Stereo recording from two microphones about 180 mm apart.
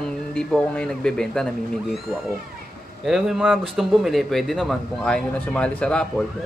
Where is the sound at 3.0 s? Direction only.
Centre (ahead or behind).